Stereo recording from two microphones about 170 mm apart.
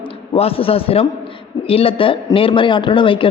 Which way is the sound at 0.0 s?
35° left (ahead or behind).